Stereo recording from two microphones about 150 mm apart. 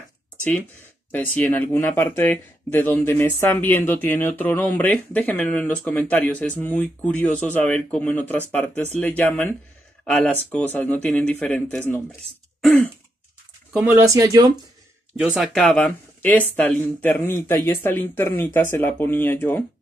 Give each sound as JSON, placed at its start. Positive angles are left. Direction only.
{"t": 0.4, "sound": "a man's voice", "side_deg": 10}
{"t": 13.7, "sound": "speech", "side_deg": -10}
{"t": 14.0, "sound": "speech", "side_deg": -20}
{"t": 15.1, "sound": "speech", "side_deg": 0}
{"t": 15.6, "sound": "a man's voice", "side_deg": 10}